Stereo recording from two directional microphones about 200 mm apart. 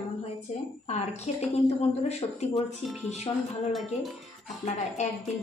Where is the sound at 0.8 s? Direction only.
35° left (ahead or behind).